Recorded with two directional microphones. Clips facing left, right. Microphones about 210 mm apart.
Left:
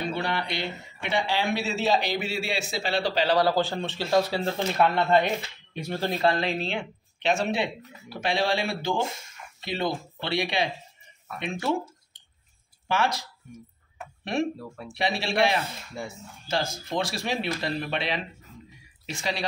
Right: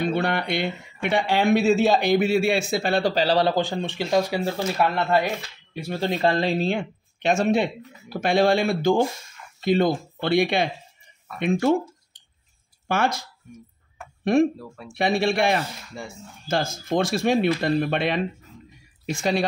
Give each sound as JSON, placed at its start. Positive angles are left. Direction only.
{"t": 0.1, "sound": "speech", "side_deg": -55}
{"t": 3.3, "sound": "speech", "side_deg": -20}
{"t": 6.3, "sound": "speech", "side_deg": -35}
{"t": 12.8, "sound": "speech", "side_deg": -50}
{"t": 14.6, "sound": "speech", "side_deg": 0}
{"t": 15.0, "sound": "speech", "side_deg": -50}
{"t": 16.0, "sound": "speech", "side_deg": 0}
{"t": 16.4, "sound": "speech", "side_deg": -50}